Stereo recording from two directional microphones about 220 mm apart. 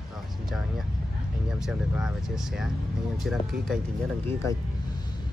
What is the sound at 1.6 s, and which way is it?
Speech, 5° right (ahead or behind).